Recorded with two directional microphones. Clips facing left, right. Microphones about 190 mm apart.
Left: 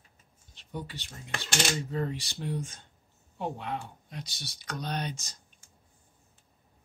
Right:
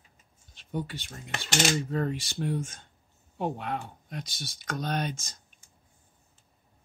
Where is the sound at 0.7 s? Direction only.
50° right (ahead or behind).